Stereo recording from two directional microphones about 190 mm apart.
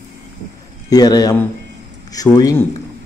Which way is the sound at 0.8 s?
20° left (ahead or behind).